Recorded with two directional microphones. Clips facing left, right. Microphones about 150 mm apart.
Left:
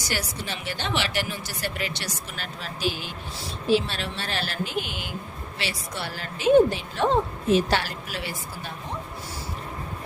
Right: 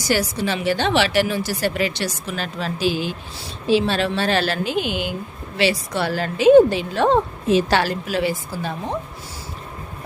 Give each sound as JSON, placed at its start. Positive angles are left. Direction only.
{"t": 0.1, "sound": "a woman's voice", "side_deg": -90}